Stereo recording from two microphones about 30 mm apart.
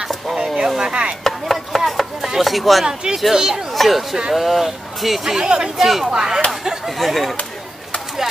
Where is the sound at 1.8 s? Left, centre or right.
Centre.